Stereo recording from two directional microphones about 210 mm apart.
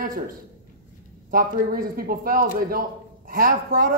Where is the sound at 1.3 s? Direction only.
45° right (ahead or behind).